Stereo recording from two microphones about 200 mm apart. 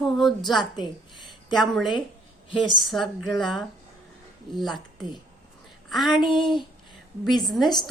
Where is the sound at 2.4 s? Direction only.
25° left (ahead or behind).